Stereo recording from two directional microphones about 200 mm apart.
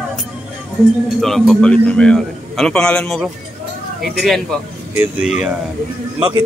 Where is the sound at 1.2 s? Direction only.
Centre (ahead or behind).